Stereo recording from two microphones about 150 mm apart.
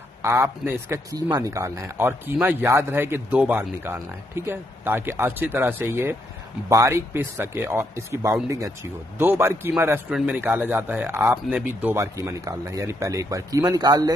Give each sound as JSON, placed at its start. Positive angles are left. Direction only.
{"t": 0.2, "sound": "speech", "side_deg": -15}